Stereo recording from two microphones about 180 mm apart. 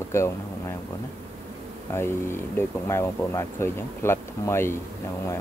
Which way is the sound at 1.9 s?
15° left (ahead or behind).